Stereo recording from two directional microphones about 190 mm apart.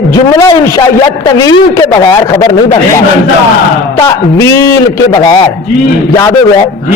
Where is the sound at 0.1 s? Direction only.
20° left (ahead or behind).